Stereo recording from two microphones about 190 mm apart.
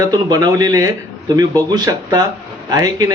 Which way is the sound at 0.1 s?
20° right (ahead or behind).